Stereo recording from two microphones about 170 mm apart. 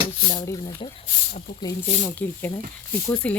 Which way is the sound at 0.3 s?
20° left (ahead or behind).